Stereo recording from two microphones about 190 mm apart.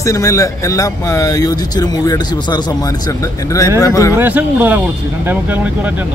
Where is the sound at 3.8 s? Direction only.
15° left (ahead or behind).